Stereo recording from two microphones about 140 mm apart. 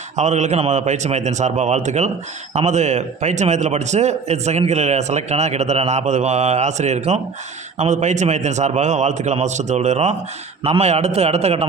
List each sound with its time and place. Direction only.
0.2 s a man's voice: 55° right (ahead or behind)